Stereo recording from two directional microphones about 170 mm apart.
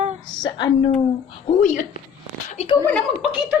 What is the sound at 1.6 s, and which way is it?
Speech, 50° left (ahead or behind).